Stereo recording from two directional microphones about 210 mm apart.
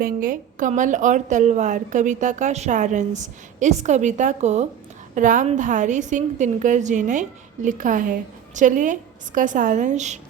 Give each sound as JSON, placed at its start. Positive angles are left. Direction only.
{"t": 0.0, "sound": "a woman's voice", "side_deg": -40}